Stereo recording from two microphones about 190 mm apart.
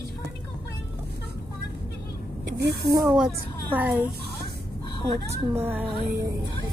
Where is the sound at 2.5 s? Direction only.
60° right (ahead or behind).